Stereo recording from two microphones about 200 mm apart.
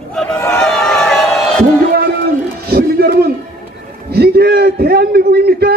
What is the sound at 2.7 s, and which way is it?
Music, 50° right (ahead or behind).